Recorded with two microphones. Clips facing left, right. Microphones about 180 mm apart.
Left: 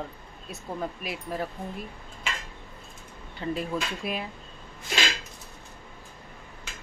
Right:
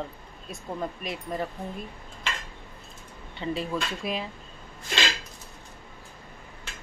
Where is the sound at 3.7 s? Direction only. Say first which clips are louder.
Right 1 dB; 5° left (ahead or behind).